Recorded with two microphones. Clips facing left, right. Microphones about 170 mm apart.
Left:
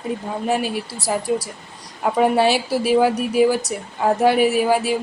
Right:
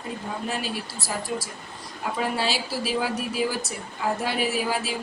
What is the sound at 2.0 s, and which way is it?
Speech, 55° left (ahead or behind).